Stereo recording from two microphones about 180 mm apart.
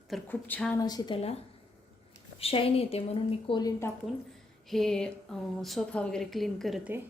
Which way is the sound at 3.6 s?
15° left (ahead or behind).